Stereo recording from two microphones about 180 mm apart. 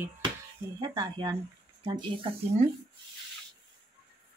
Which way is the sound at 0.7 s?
25° right (ahead or behind).